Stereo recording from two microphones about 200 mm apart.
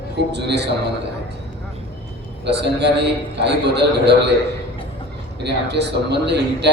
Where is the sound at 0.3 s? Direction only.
60° right (ahead or behind).